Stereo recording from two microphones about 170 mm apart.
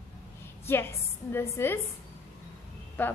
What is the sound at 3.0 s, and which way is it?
Speech, 10° left (ahead or behind).